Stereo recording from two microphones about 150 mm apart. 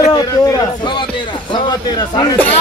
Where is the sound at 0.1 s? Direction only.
25° left (ahead or behind).